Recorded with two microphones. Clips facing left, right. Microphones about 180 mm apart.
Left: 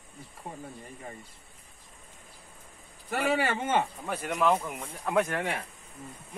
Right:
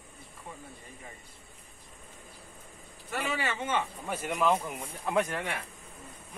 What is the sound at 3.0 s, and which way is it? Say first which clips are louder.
Speech: left 6 dB; 55° left (ahead or behind).